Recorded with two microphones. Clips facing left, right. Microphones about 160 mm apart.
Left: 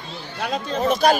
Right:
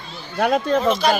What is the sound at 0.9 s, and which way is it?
Speech, 50° left (ahead or behind).